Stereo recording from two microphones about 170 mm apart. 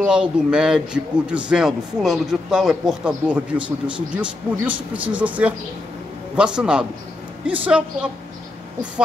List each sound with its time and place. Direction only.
0.0 s a man's voice: 5° right (ahead or behind)